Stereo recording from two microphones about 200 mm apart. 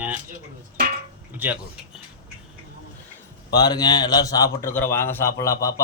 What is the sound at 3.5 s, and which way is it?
A man's voice, 20° left (ahead or behind).